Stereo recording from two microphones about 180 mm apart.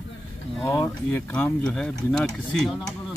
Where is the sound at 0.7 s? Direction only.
15° left (ahead or behind).